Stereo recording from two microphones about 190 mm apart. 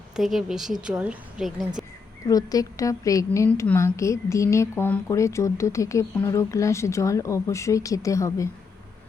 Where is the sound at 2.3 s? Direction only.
20° left (ahead or behind).